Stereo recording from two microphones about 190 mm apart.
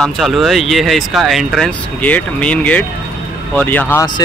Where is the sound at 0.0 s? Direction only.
Centre (ahead or behind).